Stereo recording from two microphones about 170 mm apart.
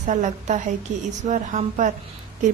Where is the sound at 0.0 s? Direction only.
45° right (ahead or behind).